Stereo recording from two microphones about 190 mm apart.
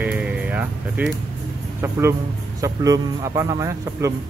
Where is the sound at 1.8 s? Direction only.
15° right (ahead or behind).